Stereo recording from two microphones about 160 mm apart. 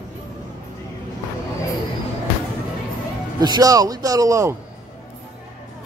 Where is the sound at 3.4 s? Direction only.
25° right (ahead or behind).